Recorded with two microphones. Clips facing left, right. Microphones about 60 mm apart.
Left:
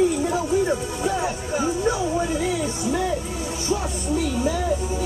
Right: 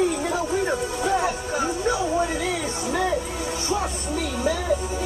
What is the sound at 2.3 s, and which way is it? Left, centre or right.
Music, right.